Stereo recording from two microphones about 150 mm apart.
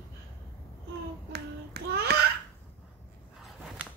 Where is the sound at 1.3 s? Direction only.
90° right.